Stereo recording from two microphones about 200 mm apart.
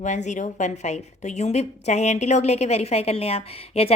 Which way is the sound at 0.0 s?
35° left (ahead or behind).